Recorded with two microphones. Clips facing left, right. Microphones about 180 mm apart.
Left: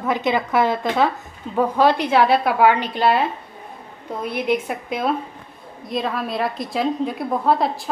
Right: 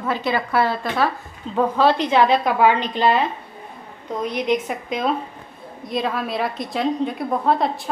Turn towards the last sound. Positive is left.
turn(degrees=0)  # may be behind; listen again after turning